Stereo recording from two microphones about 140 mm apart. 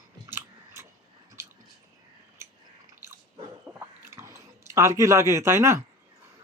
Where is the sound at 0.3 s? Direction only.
15° right (ahead or behind).